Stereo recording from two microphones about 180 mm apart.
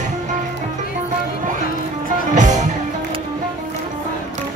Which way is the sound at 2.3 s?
45° right (ahead or behind).